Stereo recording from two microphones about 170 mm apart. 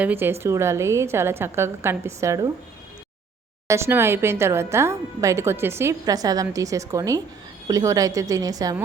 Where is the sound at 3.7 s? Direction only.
15° right (ahead or behind).